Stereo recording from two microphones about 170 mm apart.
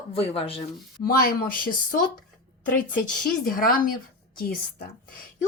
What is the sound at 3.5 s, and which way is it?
Speech, 55° left (ahead or behind).